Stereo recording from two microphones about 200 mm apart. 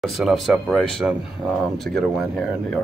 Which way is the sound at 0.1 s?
Centre (ahead or behind).